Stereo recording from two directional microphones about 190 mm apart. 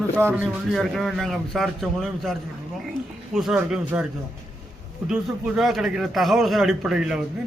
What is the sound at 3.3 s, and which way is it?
Speech, 5° right (ahead or behind).